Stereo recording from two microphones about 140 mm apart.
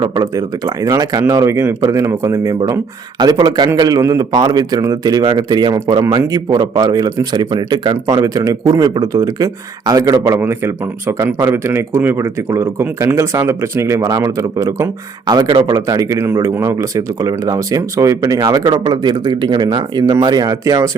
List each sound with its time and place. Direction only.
0.0 s speech: 25° right (ahead or behind)